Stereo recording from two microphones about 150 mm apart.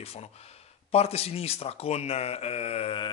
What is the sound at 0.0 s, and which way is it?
A man's voice, 45° left (ahead or behind).